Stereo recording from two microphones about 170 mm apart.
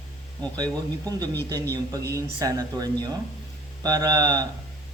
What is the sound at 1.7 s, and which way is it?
Speech, 20° right (ahead or behind).